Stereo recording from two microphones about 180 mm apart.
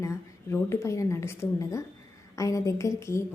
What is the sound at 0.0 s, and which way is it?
A woman's voice, 15° left (ahead or behind).